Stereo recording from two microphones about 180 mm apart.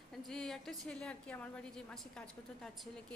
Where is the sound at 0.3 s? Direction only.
Centre (ahead or behind).